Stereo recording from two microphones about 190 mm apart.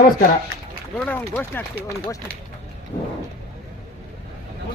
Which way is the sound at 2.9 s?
30° left (ahead or behind).